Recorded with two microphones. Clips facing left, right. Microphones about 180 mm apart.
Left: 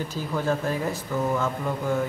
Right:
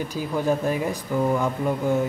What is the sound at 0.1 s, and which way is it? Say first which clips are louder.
Speech: right 4 dB; 15° right (ahead or behind).